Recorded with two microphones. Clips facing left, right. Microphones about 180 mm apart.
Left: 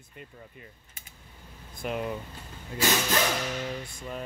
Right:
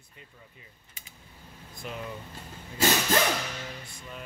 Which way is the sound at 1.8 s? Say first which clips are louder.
Left 7 dB; 55° left (ahead or behind).